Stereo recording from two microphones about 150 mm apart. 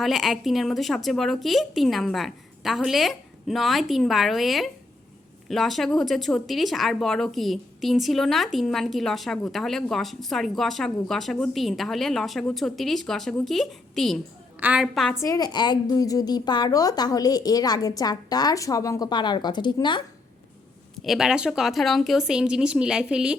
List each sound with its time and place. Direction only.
0.0 s speech: centre (ahead or behind)
15.1 s a woman's voice: 20° left (ahead or behind)
21.0 s speech: centre (ahead or behind)